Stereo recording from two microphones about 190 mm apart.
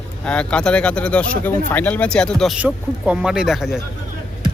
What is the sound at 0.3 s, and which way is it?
Speech, 5° left (ahead or behind).